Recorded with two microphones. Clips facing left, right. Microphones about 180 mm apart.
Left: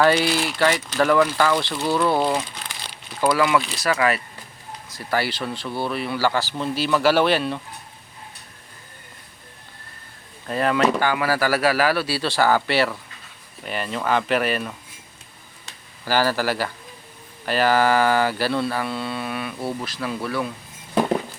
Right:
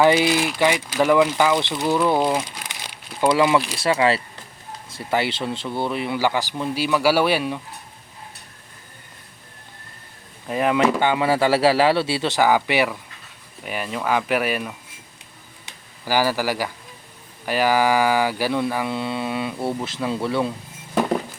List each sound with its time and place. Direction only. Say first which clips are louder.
0.0 s speech: right 2 dB; 15° right (ahead or behind)
10.4 s speech: right 1 dB; 15° right (ahead or behind)
15.6 s a sound: even; 10° right (ahead or behind)
17.4 s speech: even; 10° right (ahead or behind)
20.9 s music: even; centre (ahead or behind)